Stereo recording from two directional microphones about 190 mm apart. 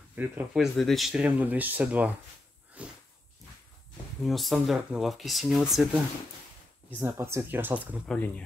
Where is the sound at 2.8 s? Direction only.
5° right (ahead or behind).